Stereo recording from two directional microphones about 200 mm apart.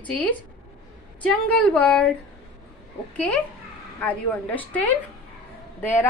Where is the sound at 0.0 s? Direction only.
5° left (ahead or behind).